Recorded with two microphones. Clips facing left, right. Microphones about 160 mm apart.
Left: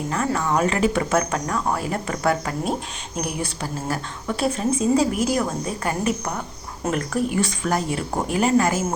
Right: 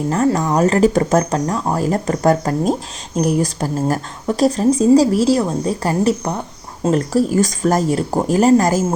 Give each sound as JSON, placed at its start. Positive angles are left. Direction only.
{"t": 0.1, "sound": "speech", "side_deg": -35}